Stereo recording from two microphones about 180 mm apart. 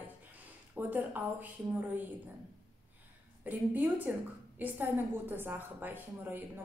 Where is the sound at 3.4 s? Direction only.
10° right (ahead or behind).